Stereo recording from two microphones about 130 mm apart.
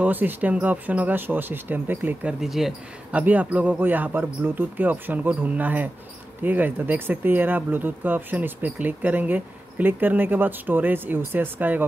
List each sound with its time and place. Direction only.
0.0 s speech: 15° right (ahead or behind)
2.4 s speech: centre (ahead or behind)